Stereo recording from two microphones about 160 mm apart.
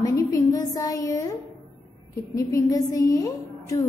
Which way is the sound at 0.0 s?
20° left (ahead or behind).